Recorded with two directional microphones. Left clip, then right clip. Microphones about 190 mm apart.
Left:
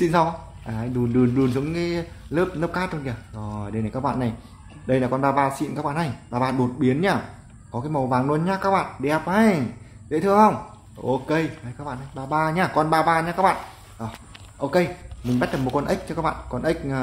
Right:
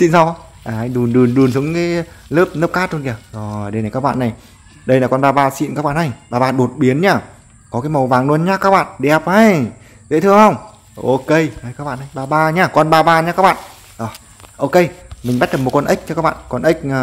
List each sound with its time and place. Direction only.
0.0 s speech: 45° right (ahead or behind)